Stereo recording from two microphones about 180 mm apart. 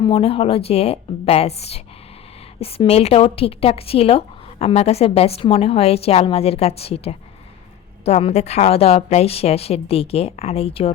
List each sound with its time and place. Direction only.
0.0 s a woman's voice: 30° left (ahead or behind)